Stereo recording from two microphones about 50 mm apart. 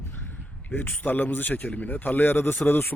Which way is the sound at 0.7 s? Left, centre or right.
Left.